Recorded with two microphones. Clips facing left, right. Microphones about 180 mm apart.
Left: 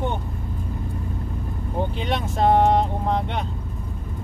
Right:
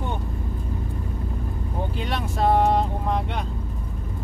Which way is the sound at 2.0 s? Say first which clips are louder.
Left 2 dB; 20° left (ahead or behind).